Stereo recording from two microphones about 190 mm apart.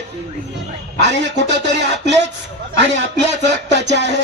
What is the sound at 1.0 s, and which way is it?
Speech, 65° right (ahead or behind).